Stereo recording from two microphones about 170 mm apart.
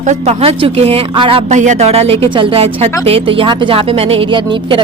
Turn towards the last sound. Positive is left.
turn(degrees=-30)  # may be behind; listen again after turning